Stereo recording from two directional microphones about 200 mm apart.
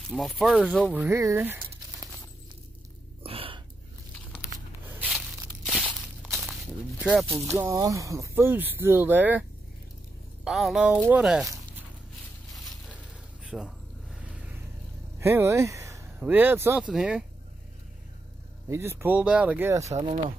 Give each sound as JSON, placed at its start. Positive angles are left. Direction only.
{"t": 0.1, "sound": "speech", "side_deg": 0}
{"t": 3.3, "sound": "a sound", "side_deg": -25}
{"t": 4.8, "sound": "a sound", "side_deg": -5}
{"t": 7.0, "sound": "speech", "side_deg": -5}
{"t": 10.4, "sound": "speech", "side_deg": 0}
{"t": 13.5, "sound": "speech", "side_deg": -5}
{"t": 14.2, "sound": "vehicle", "side_deg": -5}
{"t": 15.1, "sound": "speech", "side_deg": -15}
{"t": 18.7, "sound": "speech", "side_deg": -10}
{"t": 19.8, "sound": "speech", "side_deg": -35}